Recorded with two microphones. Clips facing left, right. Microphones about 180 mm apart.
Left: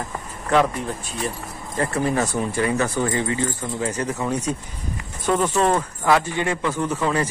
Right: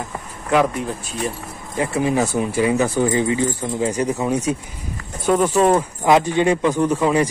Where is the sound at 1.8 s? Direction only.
10° right (ahead or behind).